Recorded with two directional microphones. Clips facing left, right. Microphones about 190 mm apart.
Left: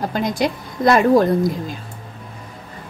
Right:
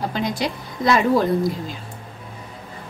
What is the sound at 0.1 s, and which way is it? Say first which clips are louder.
A woman's voice: left 4 dB; 50° left (ahead or behind).